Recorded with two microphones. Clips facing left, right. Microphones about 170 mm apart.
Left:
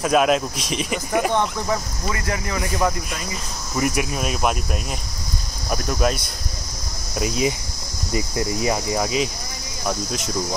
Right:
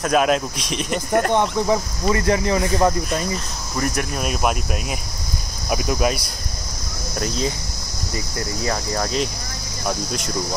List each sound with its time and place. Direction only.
0.0 s speech: centre (ahead or behind)
1.3 s speech: 15° right (ahead or behind)
2.0 s speech: 30° right (ahead or behind)
3.7 s speech: 10° left (ahead or behind)
5.7 s speech: 5° right (ahead or behind)
7.2 s cricket: 10° left (ahead or behind)
9.8 s speech: 5° left (ahead or behind)